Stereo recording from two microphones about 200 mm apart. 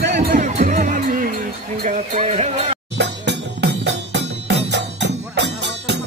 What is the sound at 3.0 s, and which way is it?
Music, 60° right (ahead or behind).